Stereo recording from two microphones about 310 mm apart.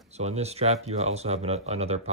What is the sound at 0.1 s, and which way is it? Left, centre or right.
Speech, right.